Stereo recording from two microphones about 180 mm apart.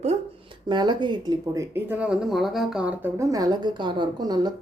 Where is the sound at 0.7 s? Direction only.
25° right (ahead or behind).